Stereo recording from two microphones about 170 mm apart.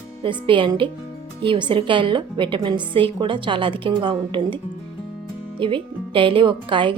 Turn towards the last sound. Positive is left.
turn(degrees=-30)  # may be behind; listen again after turning